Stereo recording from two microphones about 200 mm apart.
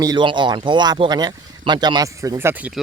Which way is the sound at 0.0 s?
20° right (ahead or behind).